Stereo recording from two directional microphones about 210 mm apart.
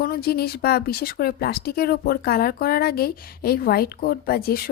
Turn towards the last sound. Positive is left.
turn(degrees=45)  # may be behind; listen again after turning